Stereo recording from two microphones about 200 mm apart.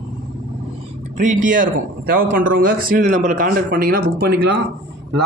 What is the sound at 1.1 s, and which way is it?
A man's voice, 40° right (ahead or behind).